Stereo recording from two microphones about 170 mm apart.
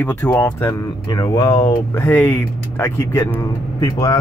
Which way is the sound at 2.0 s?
10° left (ahead or behind).